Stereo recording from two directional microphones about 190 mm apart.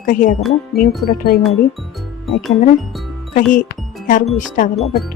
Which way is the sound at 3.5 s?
45° left (ahead or behind).